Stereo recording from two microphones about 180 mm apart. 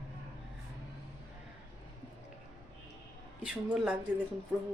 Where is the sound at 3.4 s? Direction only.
5° right (ahead or behind).